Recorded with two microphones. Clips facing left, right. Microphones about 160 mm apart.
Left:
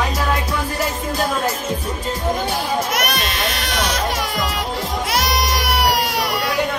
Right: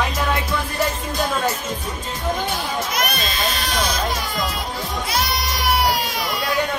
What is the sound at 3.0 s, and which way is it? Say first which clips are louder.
Music: left 2 dB; 80° left.